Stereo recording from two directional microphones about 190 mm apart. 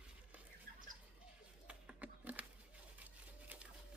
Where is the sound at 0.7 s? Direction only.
55° right (ahead or behind).